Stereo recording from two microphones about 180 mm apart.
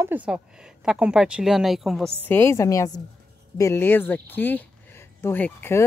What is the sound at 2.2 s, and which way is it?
Speech, 10° left (ahead or behind).